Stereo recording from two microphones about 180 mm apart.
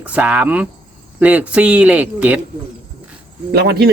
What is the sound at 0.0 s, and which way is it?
Speech, 10° right (ahead or behind).